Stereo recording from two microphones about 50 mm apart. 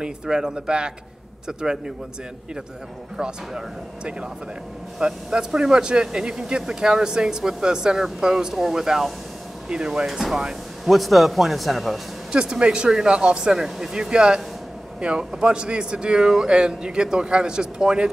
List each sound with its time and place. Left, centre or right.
0.0 s speech: centre
3.2 s speech: centre
12.3 s speech: centre